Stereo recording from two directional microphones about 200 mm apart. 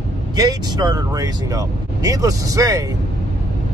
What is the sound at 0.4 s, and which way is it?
Speech, 20° right (ahead or behind).